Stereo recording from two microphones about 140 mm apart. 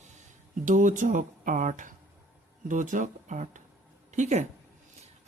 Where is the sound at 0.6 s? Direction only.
70° right (ahead or behind).